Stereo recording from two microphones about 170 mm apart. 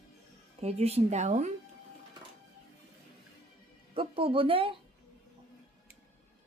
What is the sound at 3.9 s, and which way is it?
Speech, 30° right (ahead or behind).